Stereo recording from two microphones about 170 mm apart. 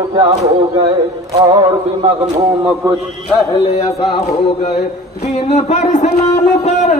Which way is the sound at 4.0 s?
40° left (ahead or behind).